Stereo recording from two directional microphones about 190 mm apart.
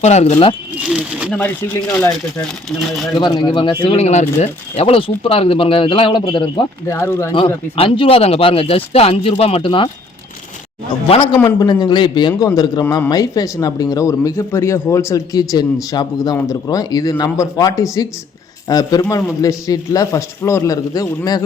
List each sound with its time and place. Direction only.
0.0 s speech: 35° left (ahead or behind)
0.8 s a sound: 5° right (ahead or behind)
1.3 s speech: 10° left (ahead or behind)
3.2 s speech: 25° left (ahead or behind)
6.8 s speech: 15° left (ahead or behind)
7.3 s speech: 25° left (ahead or behind)
11.4 s speech: 25° left (ahead or behind)